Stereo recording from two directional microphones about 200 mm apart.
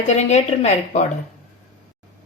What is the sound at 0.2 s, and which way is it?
Speech, 35° left (ahead or behind).